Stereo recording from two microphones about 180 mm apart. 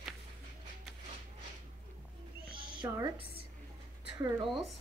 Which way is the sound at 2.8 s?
15° right (ahead or behind).